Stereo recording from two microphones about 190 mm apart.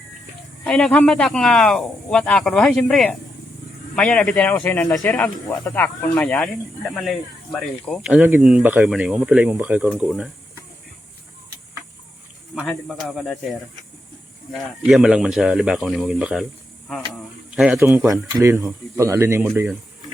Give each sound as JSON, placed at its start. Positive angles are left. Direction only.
{"t": 0.6, "sound": "speech", "side_deg": 5}
{"t": 12.5, "sound": "speech", "side_deg": 0}
{"t": 14.5, "sound": "speech", "side_deg": 0}
{"t": 17.5, "sound": "speech", "side_deg": 0}
{"t": 18.3, "sound": "speech", "side_deg": -15}